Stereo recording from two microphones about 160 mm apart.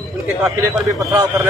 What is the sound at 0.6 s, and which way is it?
Speech, 20° right (ahead or behind).